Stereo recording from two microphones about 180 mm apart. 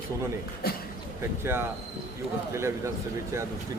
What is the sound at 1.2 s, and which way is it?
A man's voice, 15° right (ahead or behind).